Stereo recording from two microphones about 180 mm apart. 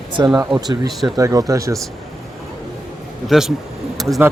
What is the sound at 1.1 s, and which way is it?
Speech, 20° right (ahead or behind).